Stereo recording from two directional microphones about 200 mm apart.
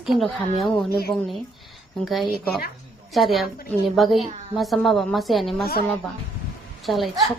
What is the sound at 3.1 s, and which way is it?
A woman's voice, centre (ahead or behind).